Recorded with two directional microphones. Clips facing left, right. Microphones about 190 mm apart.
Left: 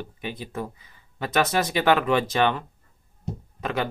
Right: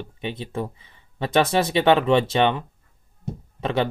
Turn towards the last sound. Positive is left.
turn(degrees=-25)  # may be behind; listen again after turning